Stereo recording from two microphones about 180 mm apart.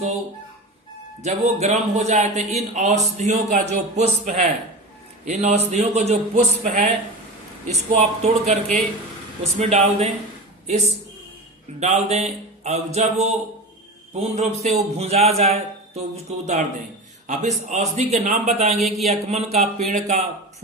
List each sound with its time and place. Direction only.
1.2 s a man's voice: 40° right (ahead or behind)
8.2 s a man's voice: 40° right (ahead or behind)
18.8 s speech: centre (ahead or behind)
19.0 s a man's voice: 35° right (ahead or behind)